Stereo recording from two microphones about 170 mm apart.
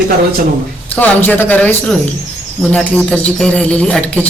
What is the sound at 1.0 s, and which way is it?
Speech, 10° left (ahead or behind).